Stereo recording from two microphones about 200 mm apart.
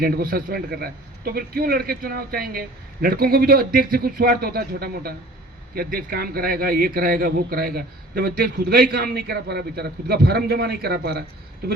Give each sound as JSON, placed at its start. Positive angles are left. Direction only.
{"t": 0.0, "sound": "a man's voice", "side_deg": -45}